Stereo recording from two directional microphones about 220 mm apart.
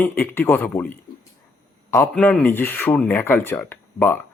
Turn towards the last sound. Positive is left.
turn(degrees=10)  # may be behind; listen again after turning